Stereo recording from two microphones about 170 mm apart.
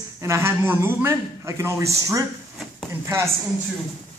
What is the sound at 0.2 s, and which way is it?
Speech, 15° right (ahead or behind).